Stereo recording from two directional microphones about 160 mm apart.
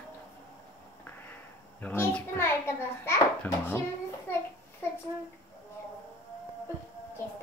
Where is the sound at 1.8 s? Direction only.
10° left (ahead or behind).